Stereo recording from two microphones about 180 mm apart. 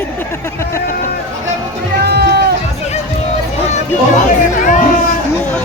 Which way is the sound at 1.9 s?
60° right (ahead or behind).